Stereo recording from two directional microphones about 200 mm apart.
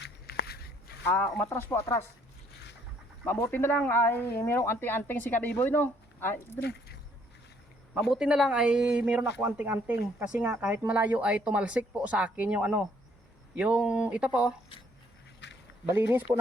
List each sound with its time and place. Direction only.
0.0 s a sound: 50° left (ahead or behind)
1.0 s speech: 10° left (ahead or behind)
3.2 s speech: 10° left (ahead or behind)
6.6 s speech: 55° left (ahead or behind)
8.1 s speech: 5° right (ahead or behind)
15.4 s duck: 60° left (ahead or behind)
15.9 s speech: 10° right (ahead or behind)